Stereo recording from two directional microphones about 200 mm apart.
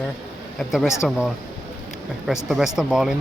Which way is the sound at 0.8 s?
15° left (ahead or behind).